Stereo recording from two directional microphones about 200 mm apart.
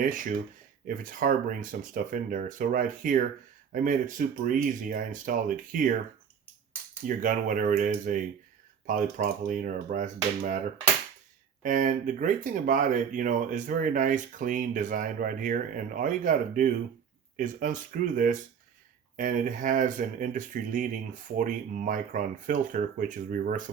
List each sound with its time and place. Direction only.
0.0 s speech: 40° right (ahead or behind)
7.1 s speech: 40° right (ahead or behind)
11.6 s speech: 40° right (ahead or behind)